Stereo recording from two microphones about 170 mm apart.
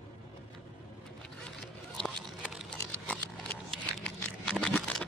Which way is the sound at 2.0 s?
Centre (ahead or behind).